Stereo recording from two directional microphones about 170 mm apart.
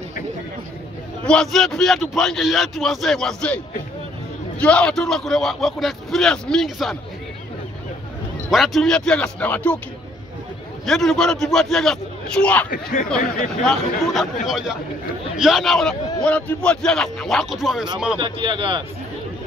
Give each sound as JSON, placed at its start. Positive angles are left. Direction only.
{"t": 1.2, "sound": "a man's voice", "side_deg": 5}
{"t": 8.5, "sound": "a man's voice", "side_deg": 0}
{"t": 10.9, "sound": "a man's voice", "side_deg": 0}
{"t": 12.6, "sound": "speech", "side_deg": 50}
{"t": 13.7, "sound": "a man's voice", "side_deg": 0}
{"t": 18.1, "sound": "speech", "side_deg": -30}